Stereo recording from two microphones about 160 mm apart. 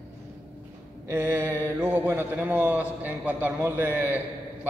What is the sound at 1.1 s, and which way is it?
Speech, 15° right (ahead or behind).